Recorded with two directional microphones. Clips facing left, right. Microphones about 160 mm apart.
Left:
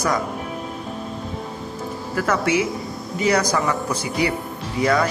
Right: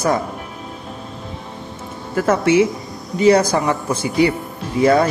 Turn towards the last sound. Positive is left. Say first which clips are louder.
# right 5 dB
turn(degrees=-25)  # may be behind; listen again after turning